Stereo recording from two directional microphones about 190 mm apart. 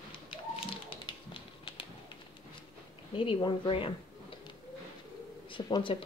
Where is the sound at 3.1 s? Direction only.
25° left (ahead or behind).